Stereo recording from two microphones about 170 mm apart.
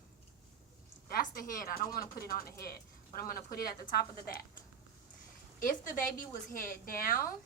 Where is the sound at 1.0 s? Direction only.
60° left (ahead or behind).